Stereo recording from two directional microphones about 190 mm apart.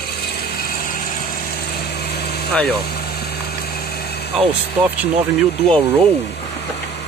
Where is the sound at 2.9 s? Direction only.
55° left (ahead or behind).